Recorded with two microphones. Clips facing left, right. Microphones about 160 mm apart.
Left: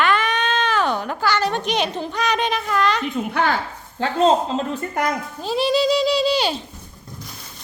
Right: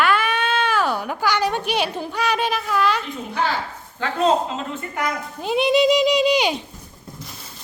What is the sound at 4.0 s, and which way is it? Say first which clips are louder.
Speech: left 2 dB; 30° left (ahead or behind).